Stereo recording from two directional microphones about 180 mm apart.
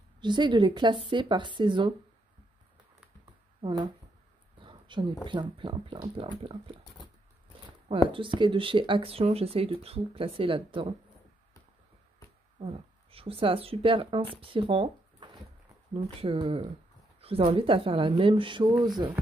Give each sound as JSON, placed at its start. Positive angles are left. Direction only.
{"t": 0.2, "sound": "speech", "side_deg": -25}
{"t": 3.6, "sound": "speech", "side_deg": -25}
{"t": 7.9, "sound": "speech", "side_deg": -30}
{"t": 12.5, "sound": "speech", "side_deg": -35}